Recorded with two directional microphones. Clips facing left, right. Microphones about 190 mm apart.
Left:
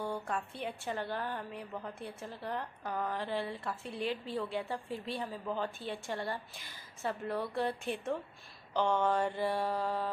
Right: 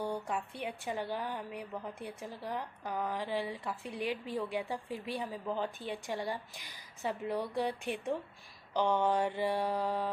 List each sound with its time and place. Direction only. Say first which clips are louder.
0.0 s a woman's voice: right 1 dB; 15° right (ahead or behind)